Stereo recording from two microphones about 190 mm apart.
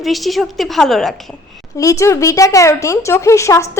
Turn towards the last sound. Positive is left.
turn(degrees=15)  # may be behind; listen again after turning